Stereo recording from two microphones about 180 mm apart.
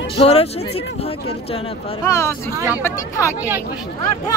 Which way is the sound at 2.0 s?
15° left (ahead or behind).